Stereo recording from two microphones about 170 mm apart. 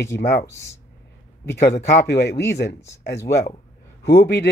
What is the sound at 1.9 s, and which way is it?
Speech, 75° left (ahead or behind).